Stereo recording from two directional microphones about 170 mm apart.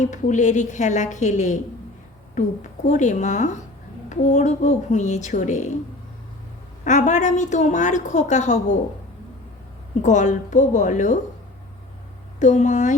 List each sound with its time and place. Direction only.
0.0 s a woman's voice: 45° left (ahead or behind)
2.9 s a woman's voice: 45° left (ahead or behind)
6.8 s a woman's voice: 45° left (ahead or behind)
10.0 s a woman's voice: 45° left (ahead or behind)
12.4 s a woman's voice: 45° left (ahead or behind)